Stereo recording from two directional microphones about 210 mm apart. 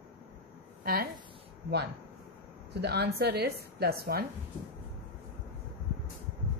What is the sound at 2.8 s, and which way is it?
A woman's voice, 50° right (ahead or behind).